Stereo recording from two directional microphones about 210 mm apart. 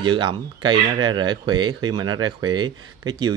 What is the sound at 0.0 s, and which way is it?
Speech, 20° right (ahead or behind).